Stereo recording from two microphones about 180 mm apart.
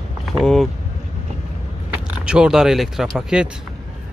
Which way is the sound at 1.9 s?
5° right (ahead or behind).